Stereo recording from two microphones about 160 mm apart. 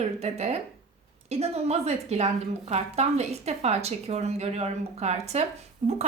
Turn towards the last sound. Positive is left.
turn(degrees=-35)  # may be behind; listen again after turning